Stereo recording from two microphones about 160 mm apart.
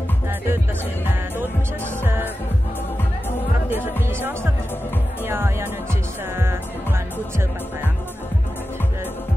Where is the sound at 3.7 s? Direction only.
15° right (ahead or behind).